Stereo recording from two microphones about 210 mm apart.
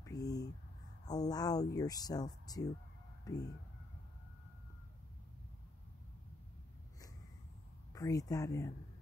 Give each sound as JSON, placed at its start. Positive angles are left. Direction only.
{"t": 0.0, "sound": "a sound", "side_deg": 15}
{"t": 1.0, "sound": "speech", "side_deg": 20}
{"t": 7.9, "sound": "speech", "side_deg": 15}